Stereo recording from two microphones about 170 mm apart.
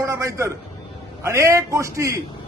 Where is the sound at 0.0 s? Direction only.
15° right (ahead or behind).